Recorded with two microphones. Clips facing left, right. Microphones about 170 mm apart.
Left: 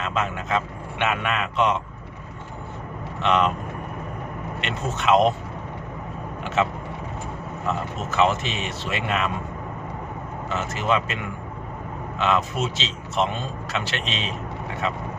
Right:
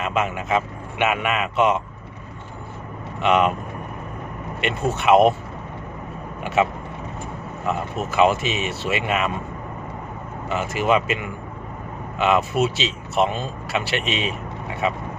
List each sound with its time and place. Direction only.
0.0 s a man's voice: 10° right (ahead or behind)
3.2 s speech: 10° right (ahead or behind)
4.6 s speech: 10° right (ahead or behind)
6.4 s speech: 10° right (ahead or behind)
7.7 s speech: 10° right (ahead or behind)
10.5 s speech: 10° right (ahead or behind)
12.2 s speech: 10° right (ahead or behind)